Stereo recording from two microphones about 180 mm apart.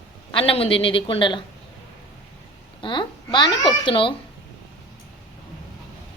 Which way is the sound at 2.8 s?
25° left (ahead or behind).